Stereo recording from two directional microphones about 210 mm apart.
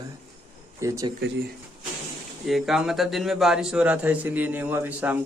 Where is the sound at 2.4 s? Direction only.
Centre (ahead or behind).